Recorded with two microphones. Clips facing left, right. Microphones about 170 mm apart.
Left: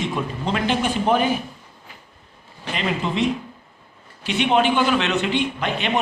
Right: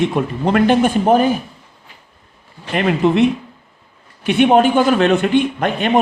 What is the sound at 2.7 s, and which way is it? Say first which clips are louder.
Speech: right 9 dB; 60° right (ahead or behind).